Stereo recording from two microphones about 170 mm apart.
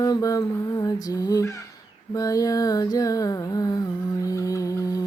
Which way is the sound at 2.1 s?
20° left (ahead or behind).